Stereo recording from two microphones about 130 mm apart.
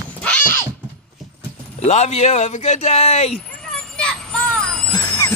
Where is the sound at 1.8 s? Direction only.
60° left (ahead or behind).